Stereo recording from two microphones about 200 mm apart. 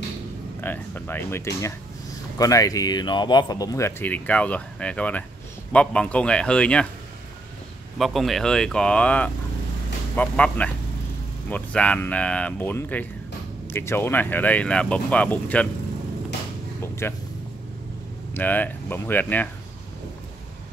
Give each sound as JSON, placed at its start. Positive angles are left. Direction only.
{"t": 0.6, "sound": "speech", "side_deg": 10}
{"t": 8.0, "sound": "speech", "side_deg": 0}
{"t": 16.8, "sound": "vehicle", "side_deg": 15}
{"t": 18.3, "sound": "speech", "side_deg": 10}